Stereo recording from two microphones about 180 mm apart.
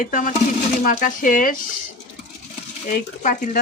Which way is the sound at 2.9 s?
45° left (ahead or behind).